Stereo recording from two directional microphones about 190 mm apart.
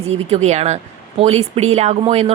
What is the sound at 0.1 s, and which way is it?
Speech, 35° right (ahead or behind).